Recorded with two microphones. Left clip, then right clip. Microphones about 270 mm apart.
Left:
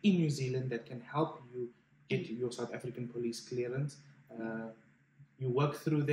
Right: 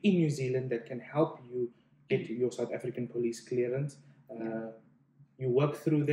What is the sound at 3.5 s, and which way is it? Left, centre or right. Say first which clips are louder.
Speech: right 7 dB; centre.